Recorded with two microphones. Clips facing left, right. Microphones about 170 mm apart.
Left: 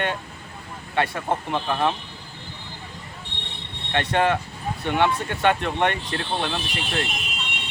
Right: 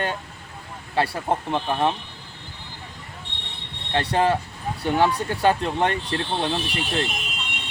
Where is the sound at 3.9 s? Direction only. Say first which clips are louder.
Right 1 dB; 35° right (ahead or behind).